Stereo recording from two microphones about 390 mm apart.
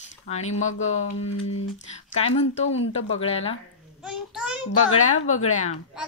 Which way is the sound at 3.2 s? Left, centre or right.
Centre.